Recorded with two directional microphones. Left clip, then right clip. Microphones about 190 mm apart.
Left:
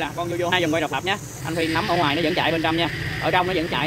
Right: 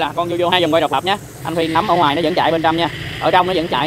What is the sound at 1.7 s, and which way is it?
Speech, 5° right (ahead or behind).